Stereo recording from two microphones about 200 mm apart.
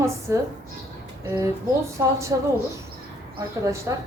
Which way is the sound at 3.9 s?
15° right (ahead or behind).